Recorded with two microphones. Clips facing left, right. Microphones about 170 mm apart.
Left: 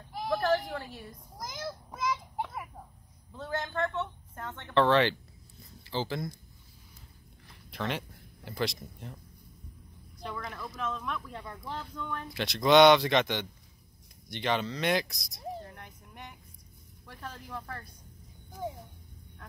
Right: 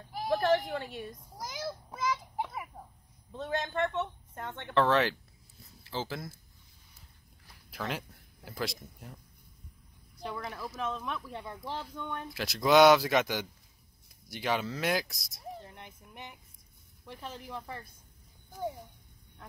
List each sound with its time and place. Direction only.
0.5 s a sound: 20° right (ahead or behind)
3.3 s a woman's voice: 20° right (ahead or behind)
4.7 s speech: centre (ahead or behind)
7.7 s speech: centre (ahead or behind)
10.3 s a woman's voice: 25° right (ahead or behind)
12.4 s speech: 5° right (ahead or behind)
15.7 s a sound: 20° right (ahead or behind)
17.0 s speech: 20° right (ahead or behind)
17.5 s speech: 10° right (ahead or behind)